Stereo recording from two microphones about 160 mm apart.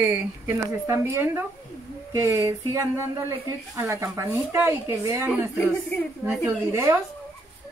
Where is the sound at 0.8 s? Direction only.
15° right (ahead or behind).